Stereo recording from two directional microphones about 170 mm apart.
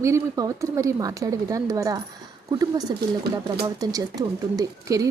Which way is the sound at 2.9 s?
70° right (ahead or behind).